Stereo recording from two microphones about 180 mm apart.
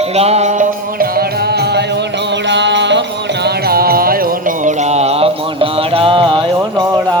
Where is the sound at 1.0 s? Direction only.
60° right (ahead or behind).